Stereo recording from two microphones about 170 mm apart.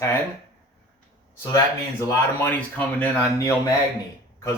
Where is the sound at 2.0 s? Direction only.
10° left (ahead or behind).